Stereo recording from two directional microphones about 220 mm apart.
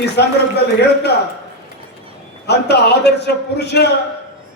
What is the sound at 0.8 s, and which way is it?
Speech, 50° left (ahead or behind).